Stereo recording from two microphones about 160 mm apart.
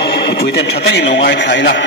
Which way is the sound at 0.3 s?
90° left.